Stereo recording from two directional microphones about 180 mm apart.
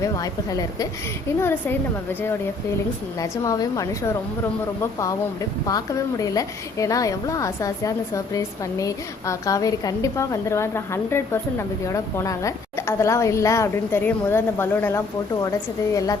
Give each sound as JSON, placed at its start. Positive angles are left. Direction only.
{"t": 0.0, "sound": "a woman's voice", "side_deg": 20}
{"t": 3.2, "sound": "a woman's voice", "side_deg": 20}